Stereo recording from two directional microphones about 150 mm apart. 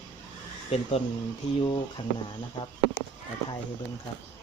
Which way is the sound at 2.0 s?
50° left (ahead or behind).